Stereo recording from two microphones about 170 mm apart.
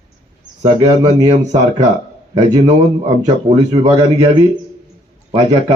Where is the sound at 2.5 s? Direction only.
25° right (ahead or behind).